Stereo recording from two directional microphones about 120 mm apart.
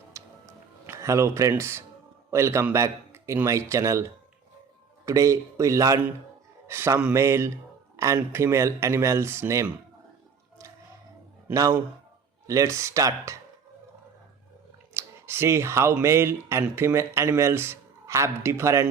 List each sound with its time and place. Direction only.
0.1 s music: 25° right (ahead or behind)
0.9 s a man's voice: 25° right (ahead or behind)
11.5 s a man's voice: 30° right (ahead or behind)
14.9 s speech: 20° right (ahead or behind)